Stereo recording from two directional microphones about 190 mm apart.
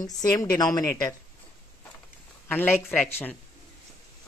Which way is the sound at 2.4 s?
10° left (ahead or behind).